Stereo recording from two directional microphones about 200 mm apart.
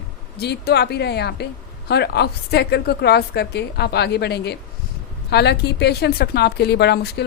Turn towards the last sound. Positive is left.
turn(degrees=55)  # may be behind; listen again after turning